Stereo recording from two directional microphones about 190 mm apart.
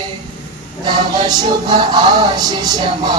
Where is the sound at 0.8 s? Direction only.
20° right (ahead or behind).